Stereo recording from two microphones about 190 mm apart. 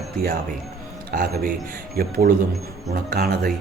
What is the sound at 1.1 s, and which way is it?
Mantra, 50° right (ahead or behind).